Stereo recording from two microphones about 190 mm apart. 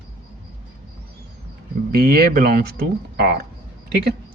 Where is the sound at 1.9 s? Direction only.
55° right (ahead or behind).